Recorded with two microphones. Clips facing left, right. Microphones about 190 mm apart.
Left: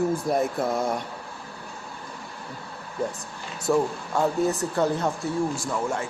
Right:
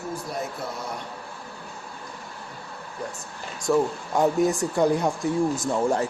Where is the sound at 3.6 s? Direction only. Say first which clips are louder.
Right 1 dB; 5° left (ahead or behind).